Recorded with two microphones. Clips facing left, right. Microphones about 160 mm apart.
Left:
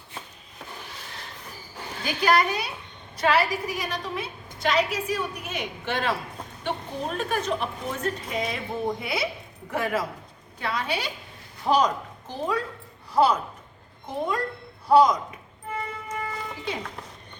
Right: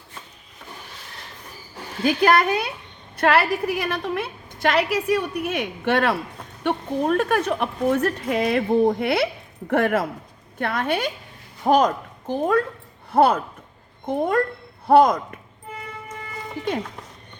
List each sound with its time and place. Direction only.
2.0 s a woman's voice: 55° right (ahead or behind)